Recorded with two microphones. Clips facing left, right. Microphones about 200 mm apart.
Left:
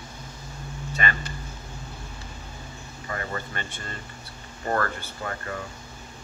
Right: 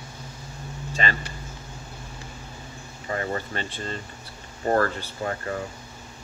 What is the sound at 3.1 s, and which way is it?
Speech, 30° right (ahead or behind).